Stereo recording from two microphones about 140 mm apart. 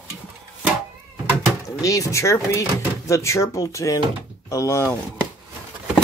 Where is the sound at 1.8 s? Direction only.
25° left (ahead or behind).